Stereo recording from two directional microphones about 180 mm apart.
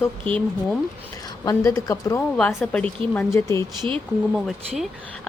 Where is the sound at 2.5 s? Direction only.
5° left (ahead or behind).